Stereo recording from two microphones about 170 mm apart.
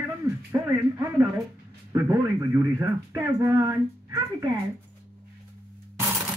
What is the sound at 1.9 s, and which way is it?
Speech, 20° right (ahead or behind).